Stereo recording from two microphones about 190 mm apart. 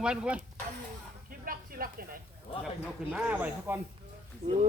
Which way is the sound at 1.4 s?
50° right (ahead or behind).